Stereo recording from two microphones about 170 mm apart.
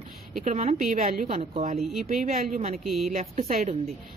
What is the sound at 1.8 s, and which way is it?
Speech, centre (ahead or behind).